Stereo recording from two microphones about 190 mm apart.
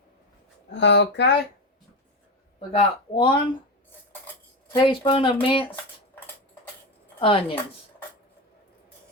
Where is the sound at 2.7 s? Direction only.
25° left (ahead or behind).